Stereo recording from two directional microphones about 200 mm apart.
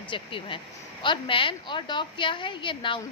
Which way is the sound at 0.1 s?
25° left (ahead or behind).